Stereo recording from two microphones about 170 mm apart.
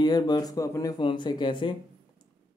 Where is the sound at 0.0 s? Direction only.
25° left (ahead or behind).